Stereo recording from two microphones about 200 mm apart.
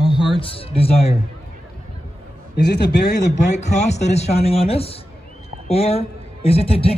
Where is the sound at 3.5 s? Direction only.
35° left (ahead or behind).